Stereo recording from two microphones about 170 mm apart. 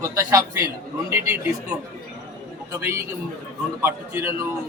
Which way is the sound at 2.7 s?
15° right (ahead or behind).